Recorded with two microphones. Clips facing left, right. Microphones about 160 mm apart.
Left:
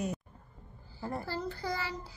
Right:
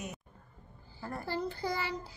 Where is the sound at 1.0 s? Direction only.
20° left (ahead or behind).